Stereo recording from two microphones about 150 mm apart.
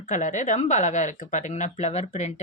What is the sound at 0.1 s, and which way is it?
Speech, 60° left (ahead or behind).